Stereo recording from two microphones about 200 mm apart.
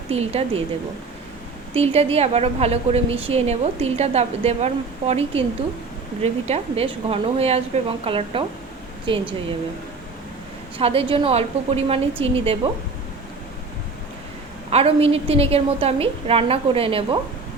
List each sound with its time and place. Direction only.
0.1 s a woman's voice: 30° right (ahead or behind)
1.7 s a woman's voice: 30° right (ahead or behind)
10.8 s a woman's voice: 30° right (ahead or behind)
14.7 s a woman's voice: 30° right (ahead or behind)